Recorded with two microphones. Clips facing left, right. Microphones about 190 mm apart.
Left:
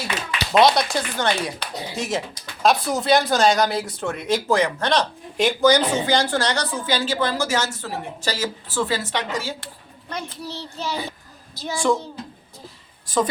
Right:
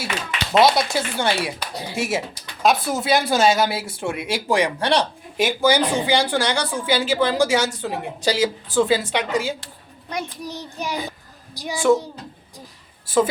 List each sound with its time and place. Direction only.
0.6 s speech: centre (ahead or behind)